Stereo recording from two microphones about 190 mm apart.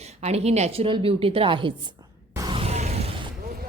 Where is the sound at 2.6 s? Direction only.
35° right (ahead or behind).